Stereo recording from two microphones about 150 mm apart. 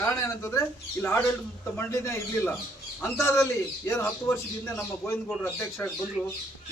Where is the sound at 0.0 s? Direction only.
20° left (ahead or behind).